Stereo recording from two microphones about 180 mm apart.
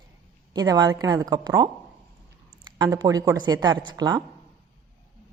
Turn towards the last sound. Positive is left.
turn(degrees=-25)  # may be behind; listen again after turning